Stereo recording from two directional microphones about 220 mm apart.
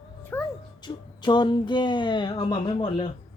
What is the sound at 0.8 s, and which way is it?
Speech, 20° left (ahead or behind).